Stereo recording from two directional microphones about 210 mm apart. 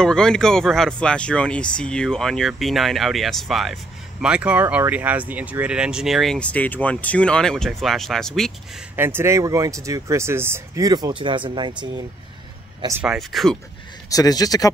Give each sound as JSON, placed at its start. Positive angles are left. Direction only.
{"t": 0.0, "sound": "speech", "side_deg": 5}
{"t": 8.9, "sound": "speech", "side_deg": -10}
{"t": 12.8, "sound": "speech", "side_deg": -10}
{"t": 14.1, "sound": "speech", "side_deg": 15}